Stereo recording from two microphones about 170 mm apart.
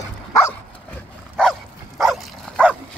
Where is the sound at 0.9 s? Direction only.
5° left (ahead or behind).